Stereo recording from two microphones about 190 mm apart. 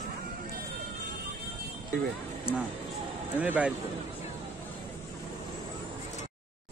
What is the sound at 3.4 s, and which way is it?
Speech, 10° right (ahead or behind).